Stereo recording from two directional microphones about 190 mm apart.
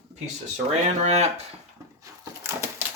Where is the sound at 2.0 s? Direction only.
15° right (ahead or behind).